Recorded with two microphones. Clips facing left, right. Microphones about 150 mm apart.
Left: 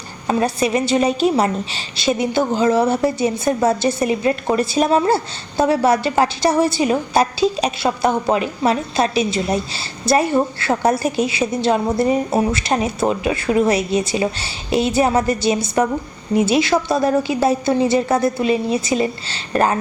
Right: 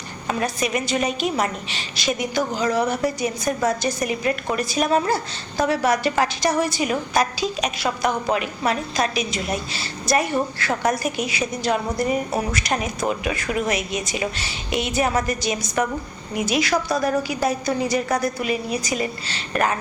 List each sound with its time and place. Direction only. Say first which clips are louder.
0.3 s a woman's voice: left 6 dB; 30° left (ahead or behind)